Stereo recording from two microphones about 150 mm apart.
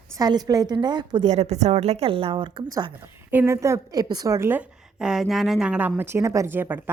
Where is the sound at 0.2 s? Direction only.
25° right (ahead or behind).